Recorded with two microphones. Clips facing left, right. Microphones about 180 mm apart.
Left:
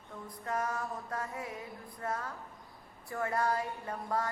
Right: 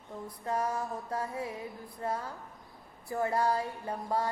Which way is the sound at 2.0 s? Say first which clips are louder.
Right 3 dB; 30° right (ahead or behind).